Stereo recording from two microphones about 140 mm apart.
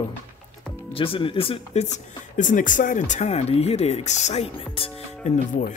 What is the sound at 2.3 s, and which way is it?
Speech, 65° left (ahead or behind).